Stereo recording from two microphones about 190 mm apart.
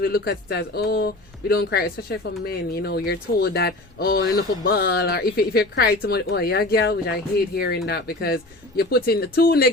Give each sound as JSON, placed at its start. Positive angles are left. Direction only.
{"t": 0.0, "sound": "speech", "side_deg": 55}